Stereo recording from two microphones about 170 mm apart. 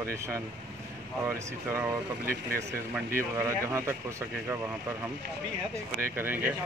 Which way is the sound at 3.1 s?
15° right (ahead or behind).